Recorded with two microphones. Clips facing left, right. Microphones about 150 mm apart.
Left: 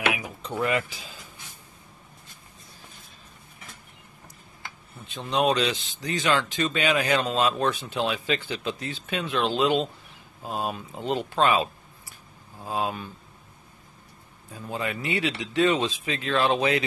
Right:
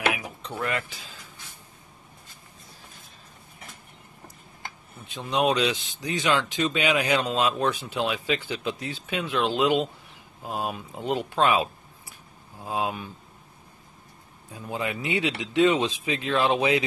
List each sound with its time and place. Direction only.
0.1 s mechanisms: centre (ahead or behind)
5.0 s speech: 10° right (ahead or behind)
14.5 s speech: 15° right (ahead or behind)